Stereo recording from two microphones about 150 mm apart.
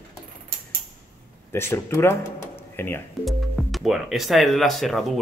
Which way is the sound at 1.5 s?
15° left (ahead or behind).